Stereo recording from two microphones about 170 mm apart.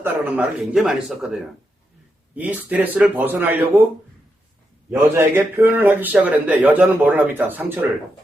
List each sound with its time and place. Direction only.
0.0 s a man's voice: 10° right (ahead or behind)
4.9 s a man's voice: 15° right (ahead or behind)